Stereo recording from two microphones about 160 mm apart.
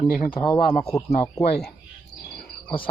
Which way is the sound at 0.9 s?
20° left (ahead or behind).